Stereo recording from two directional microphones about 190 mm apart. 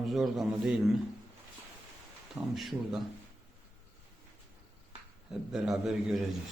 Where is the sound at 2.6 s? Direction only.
Centre (ahead or behind).